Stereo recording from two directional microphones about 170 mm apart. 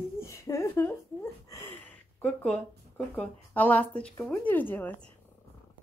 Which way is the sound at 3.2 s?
10° left (ahead or behind).